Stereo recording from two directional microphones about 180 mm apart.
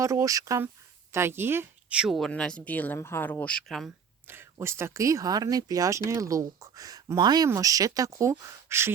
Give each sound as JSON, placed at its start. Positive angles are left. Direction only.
{"t": 0.0, "sound": "speech", "side_deg": -15}
{"t": 4.3, "sound": "speech", "side_deg": -15}